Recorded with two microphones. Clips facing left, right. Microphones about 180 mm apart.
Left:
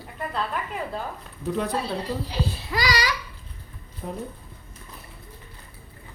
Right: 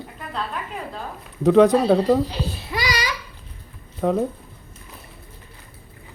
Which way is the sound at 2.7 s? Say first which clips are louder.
Even; 20° right (ahead or behind).